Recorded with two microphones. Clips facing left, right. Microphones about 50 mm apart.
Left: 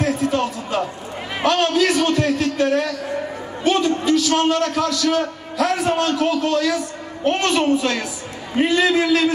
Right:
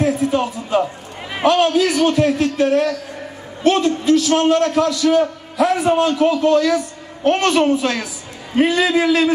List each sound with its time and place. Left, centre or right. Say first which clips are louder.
0.0 s a man's voice: right 2 dB; centre
8.6 s a man's voice: even; centre